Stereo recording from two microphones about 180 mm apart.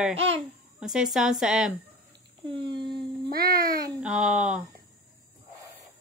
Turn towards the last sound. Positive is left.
turn(degrees=-5)  # may be behind; listen again after turning